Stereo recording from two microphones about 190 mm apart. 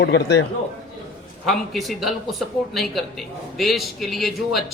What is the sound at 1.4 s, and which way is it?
Speech, centre (ahead or behind).